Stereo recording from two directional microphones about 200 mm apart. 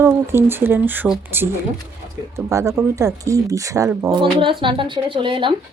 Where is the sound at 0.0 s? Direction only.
10° right (ahead or behind).